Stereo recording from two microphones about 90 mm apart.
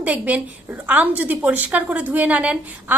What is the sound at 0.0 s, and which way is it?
A woman's voice, 15° right (ahead or behind).